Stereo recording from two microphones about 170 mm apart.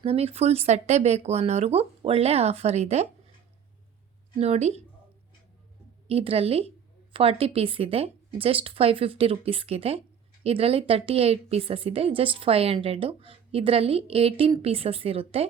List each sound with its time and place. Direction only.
0.0 s a woman's voice: 35° right (ahead or behind)
4.4 s a woman's voice: 40° right (ahead or behind)
6.1 s a woman's voice: 35° right (ahead or behind)